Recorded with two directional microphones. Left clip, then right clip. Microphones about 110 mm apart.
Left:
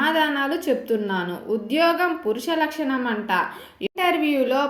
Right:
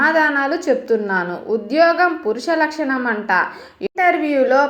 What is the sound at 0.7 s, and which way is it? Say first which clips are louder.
A woman's voice: right 6 dB; 20° left (ahead or behind).